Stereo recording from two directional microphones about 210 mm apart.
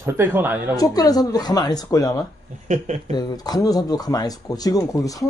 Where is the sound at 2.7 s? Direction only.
35° right (ahead or behind).